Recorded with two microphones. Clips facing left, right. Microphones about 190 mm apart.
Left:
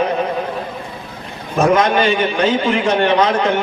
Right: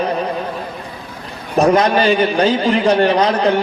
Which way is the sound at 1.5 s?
35° right (ahead or behind).